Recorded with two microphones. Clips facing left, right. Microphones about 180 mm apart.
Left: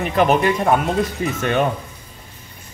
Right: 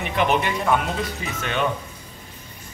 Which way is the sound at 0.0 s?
40° left (ahead or behind).